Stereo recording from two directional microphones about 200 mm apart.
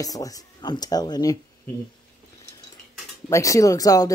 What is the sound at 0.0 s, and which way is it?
Speech, 15° left (ahead or behind).